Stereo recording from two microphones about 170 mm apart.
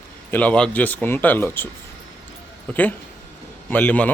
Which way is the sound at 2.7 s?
5° left (ahead or behind).